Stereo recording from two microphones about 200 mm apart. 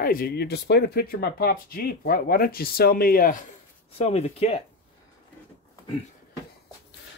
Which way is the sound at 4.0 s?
30° left (ahead or behind).